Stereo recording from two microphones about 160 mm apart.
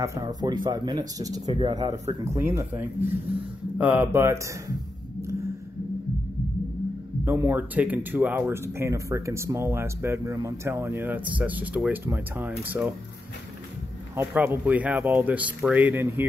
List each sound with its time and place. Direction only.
0.0 s speech: 20° right (ahead or behind)
1.4 s speech: 35° right (ahead or behind); by 4.4 s 15° right (ahead or behind)
7.2 s speech: 15° right (ahead or behind)
14.1 s speech: 10° right (ahead or behind)